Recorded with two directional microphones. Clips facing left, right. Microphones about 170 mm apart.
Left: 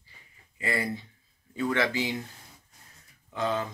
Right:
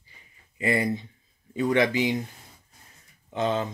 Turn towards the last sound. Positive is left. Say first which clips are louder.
# right 3 dB
turn(degrees=-20)  # may be behind; listen again after turning